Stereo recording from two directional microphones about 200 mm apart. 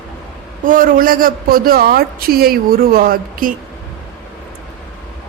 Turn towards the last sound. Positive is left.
turn(degrees=-45)  # may be behind; listen again after turning